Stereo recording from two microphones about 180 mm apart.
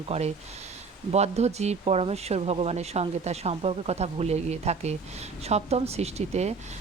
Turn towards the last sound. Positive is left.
turn(degrees=-35)  # may be behind; listen again after turning